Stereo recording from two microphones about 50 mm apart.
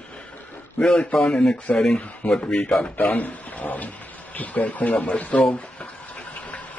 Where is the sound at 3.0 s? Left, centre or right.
Left.